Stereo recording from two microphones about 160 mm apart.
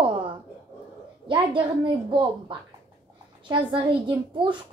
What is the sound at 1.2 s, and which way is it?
A woman's voice, 30° right (ahead or behind).